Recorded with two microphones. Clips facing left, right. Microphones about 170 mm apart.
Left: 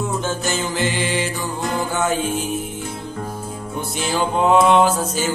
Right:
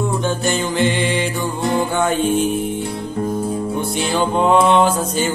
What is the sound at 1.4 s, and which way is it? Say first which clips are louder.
Music: right 4 dB; 25° right (ahead or behind).